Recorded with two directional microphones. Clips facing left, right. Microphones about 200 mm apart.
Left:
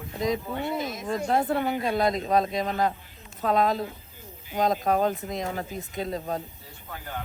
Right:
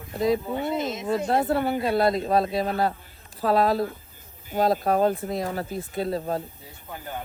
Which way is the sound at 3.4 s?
35° right (ahead or behind).